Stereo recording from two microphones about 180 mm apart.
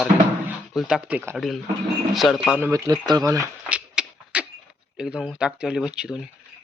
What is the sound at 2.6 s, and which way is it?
Speech, 20° right (ahead or behind).